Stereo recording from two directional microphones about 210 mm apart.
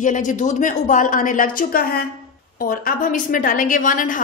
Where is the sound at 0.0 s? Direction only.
35° left (ahead or behind).